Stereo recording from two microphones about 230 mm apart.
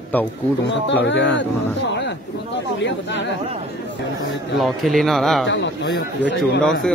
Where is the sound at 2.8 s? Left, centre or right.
Left.